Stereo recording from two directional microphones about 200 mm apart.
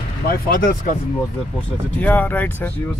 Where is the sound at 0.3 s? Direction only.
45° left (ahead or behind).